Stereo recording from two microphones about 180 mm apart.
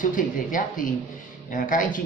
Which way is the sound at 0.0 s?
45° left (ahead or behind).